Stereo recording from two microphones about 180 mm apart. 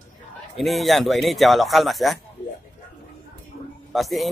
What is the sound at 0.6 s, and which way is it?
Speech, centre (ahead or behind).